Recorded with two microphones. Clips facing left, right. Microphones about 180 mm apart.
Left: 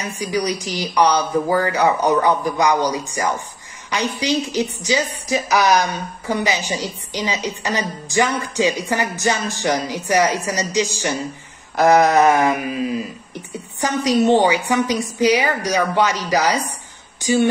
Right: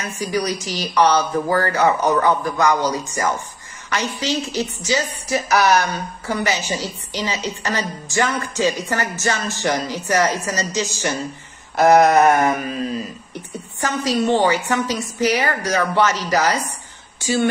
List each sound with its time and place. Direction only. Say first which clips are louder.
0.2 s a woman's voice: even; 15° left (ahead or behind)
12.4 s a woman's voice: left 1 dB; 5° left (ahead or behind)